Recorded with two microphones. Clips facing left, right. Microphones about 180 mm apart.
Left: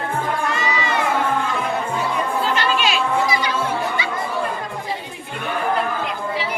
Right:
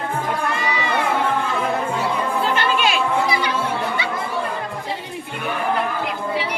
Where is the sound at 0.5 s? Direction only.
60° right (ahead or behind).